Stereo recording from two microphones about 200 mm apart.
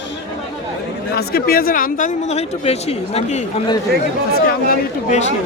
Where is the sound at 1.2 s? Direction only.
50° left (ahead or behind); by 3.7 s 30° left (ahead or behind).